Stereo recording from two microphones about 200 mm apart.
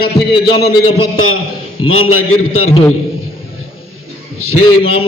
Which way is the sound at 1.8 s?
90° left.